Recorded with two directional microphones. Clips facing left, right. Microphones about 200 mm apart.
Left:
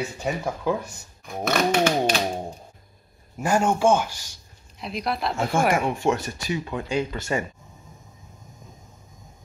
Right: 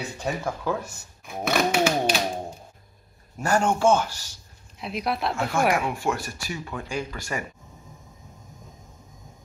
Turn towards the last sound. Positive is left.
turn(degrees=25)  # may be behind; listen again after turning